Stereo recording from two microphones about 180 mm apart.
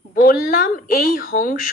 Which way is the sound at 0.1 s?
55° left (ahead or behind).